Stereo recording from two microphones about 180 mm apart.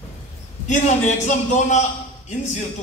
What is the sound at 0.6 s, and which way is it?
Speech, 40° left (ahead or behind).